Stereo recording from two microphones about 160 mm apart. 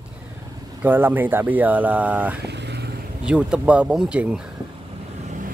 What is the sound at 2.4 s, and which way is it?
Vehicle, 90° right.